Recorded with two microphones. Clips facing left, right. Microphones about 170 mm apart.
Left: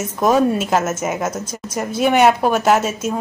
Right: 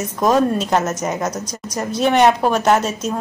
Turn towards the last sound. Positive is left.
turn(degrees=5)  # may be behind; listen again after turning